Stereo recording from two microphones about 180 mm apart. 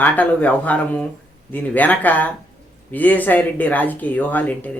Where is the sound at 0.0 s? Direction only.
10° left (ahead or behind).